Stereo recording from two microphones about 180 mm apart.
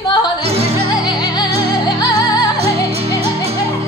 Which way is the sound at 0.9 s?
25° left (ahead or behind).